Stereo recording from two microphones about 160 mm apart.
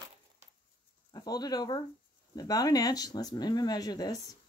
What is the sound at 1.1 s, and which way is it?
Speech, 25° left (ahead or behind).